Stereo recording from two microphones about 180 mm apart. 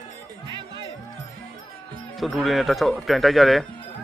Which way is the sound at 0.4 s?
25° right (ahead or behind).